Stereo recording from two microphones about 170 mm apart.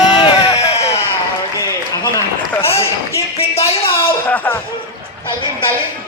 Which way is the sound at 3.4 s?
35° left (ahead or behind).